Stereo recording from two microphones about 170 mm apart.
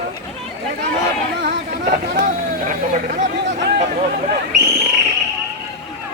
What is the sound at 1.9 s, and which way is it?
Speech, 50° right (ahead or behind).